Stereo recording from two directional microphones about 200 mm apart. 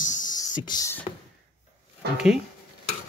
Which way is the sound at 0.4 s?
20° left (ahead or behind).